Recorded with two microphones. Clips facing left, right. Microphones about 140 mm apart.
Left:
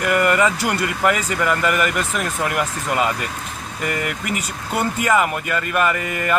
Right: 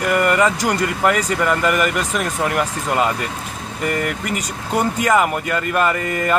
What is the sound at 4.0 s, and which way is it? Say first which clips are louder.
Speech: right 2 dB; 40° right (ahead or behind).